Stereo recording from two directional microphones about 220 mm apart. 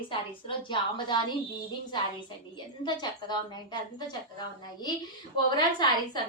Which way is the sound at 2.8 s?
20° left (ahead or behind).